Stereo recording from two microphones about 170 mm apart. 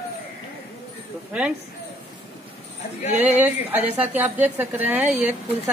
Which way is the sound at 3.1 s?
10° right (ahead or behind).